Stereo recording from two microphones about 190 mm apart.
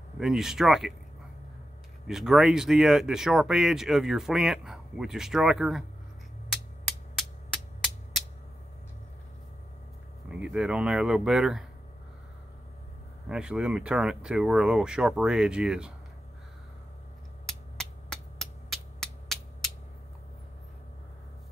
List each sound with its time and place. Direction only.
0.2 s speech: centre (ahead or behind)
2.0 s speech: 5° right (ahead or behind)
6.5 s music: centre (ahead or behind)
10.4 s speech: 5° right (ahead or behind)
13.3 s speech: 5° right (ahead or behind)
17.5 s a sound: centre (ahead or behind)